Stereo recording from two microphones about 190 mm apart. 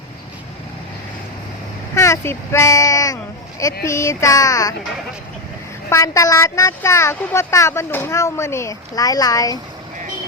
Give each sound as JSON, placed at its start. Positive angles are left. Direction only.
{"t": 2.0, "sound": "speech", "side_deg": 15}
{"t": 5.9, "sound": "speech", "side_deg": 15}